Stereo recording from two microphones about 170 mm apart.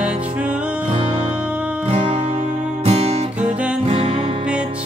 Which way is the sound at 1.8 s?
30° right (ahead or behind).